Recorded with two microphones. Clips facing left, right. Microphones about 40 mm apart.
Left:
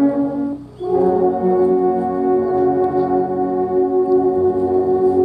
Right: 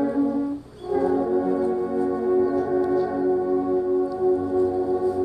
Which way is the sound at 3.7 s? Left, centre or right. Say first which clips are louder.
Left 8 dB; left.